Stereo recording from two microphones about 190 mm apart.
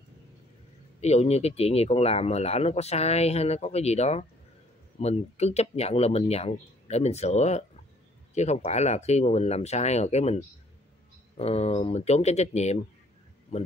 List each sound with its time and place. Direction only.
1.0 s speech: 35° left (ahead or behind)